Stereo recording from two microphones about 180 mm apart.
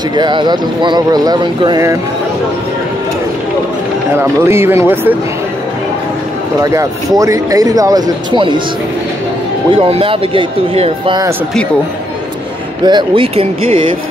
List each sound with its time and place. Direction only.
0.1 s speech: 25° right (ahead or behind)
4.2 s speech: 15° right (ahead or behind)
6.6 s speech: 20° right (ahead or behind)
9.7 s speech: 35° right (ahead or behind)
12.8 s speech: 25° right (ahead or behind)